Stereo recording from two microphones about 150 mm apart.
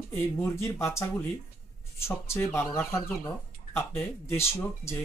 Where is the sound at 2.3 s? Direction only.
15° left (ahead or behind).